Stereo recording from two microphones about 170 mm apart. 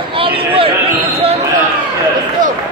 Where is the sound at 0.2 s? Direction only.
30° right (ahead or behind).